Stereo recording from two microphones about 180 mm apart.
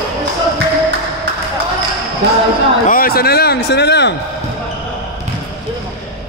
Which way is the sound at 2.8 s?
55° left (ahead or behind).